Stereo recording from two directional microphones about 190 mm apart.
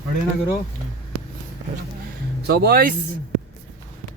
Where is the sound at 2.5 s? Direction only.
55° right (ahead or behind).